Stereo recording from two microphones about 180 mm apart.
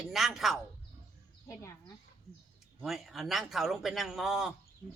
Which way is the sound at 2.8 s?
Centre (ahead or behind).